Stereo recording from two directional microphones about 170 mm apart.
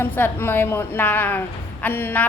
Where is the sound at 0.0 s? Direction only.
15° left (ahead or behind).